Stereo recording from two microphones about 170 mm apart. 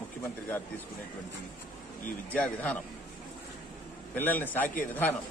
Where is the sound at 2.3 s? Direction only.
10° left (ahead or behind).